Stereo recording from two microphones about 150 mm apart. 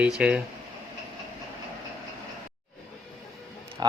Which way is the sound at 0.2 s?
5° right (ahead or behind).